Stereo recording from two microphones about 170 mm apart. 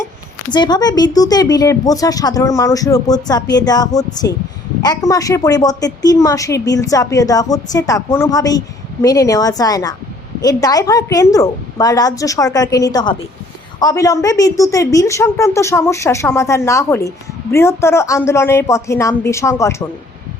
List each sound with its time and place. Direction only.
0.5 s a woman's voice: 25° left (ahead or behind)